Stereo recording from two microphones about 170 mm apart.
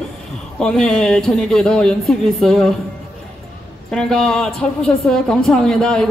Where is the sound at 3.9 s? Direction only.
5° left (ahead or behind).